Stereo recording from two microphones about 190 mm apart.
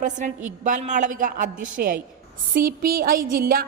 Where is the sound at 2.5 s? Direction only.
50° right (ahead or behind).